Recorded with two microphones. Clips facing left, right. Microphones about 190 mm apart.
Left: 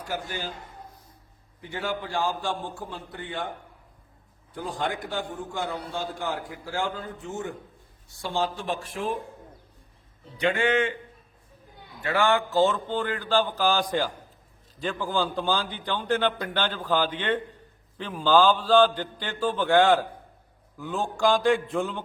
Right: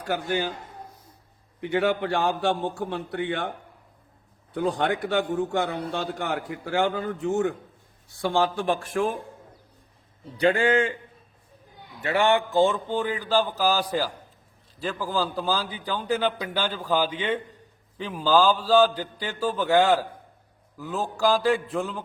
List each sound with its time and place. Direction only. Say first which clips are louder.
0.0 s speech: right 6 dB; 60° right (ahead or behind)
1.6 s a man's voice: right 8 dB; 65° right (ahead or behind)
4.5 s a man's voice: right 6 dB; 70° right (ahead or behind)
8.2 s speech: right 5 dB; 55° right (ahead or behind)
10.3 s a man's voice: right 3 dB; 35° right (ahead or behind)
12.0 s a man's voice: right 2 dB; 20° right (ahead or behind); by 22.0 s centre (ahead or behind)